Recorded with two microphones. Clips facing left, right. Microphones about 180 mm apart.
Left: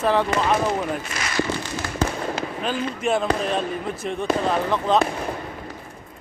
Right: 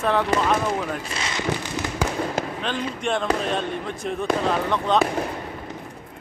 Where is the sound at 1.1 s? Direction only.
25° right (ahead or behind).